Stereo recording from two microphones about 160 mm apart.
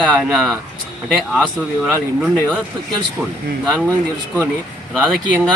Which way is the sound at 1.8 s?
Centre (ahead or behind).